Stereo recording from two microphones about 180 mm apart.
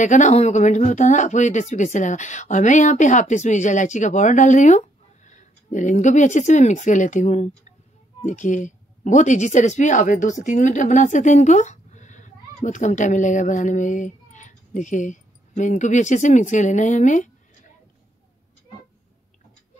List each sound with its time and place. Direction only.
0.0 s a woman's voice: 45° left (ahead or behind)